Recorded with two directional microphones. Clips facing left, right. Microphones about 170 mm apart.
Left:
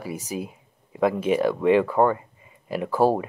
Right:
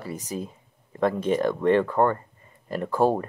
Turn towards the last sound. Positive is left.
turn(degrees=5)  # may be behind; listen again after turning